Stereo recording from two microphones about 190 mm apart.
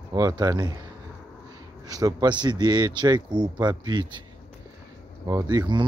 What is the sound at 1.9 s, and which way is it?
Speech, 20° right (ahead or behind).